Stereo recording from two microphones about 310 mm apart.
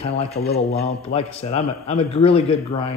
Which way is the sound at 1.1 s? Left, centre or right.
Centre.